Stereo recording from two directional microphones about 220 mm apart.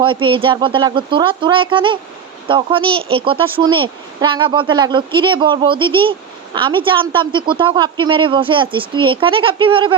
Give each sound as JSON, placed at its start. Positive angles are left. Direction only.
{"t": 0.0, "sound": "speech", "side_deg": -20}